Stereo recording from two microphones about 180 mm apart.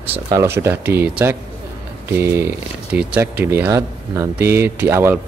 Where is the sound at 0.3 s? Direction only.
15° right (ahead or behind).